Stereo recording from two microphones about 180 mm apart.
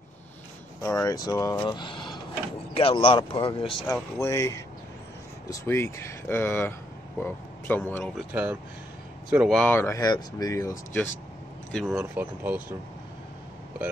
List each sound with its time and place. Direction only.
0.8 s speech: 20° left (ahead or behind)
8.2 s speech: 10° right (ahead or behind)
9.5 s speech: 5° left (ahead or behind)
11.7 s speech: centre (ahead or behind)
12.2 s speech: 10° right (ahead or behind)